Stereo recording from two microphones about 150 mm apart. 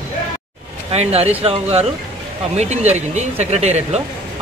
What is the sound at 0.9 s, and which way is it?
Speech, 45° right (ahead or behind).